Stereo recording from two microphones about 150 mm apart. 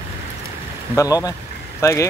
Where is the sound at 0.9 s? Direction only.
20° left (ahead or behind).